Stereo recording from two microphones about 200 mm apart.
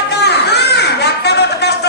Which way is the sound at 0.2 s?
55° left (ahead or behind).